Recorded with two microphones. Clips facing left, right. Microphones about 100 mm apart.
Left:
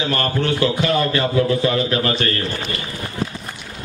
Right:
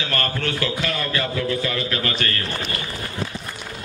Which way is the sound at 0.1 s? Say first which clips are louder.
Left 3 dB; 20° left (ahead or behind).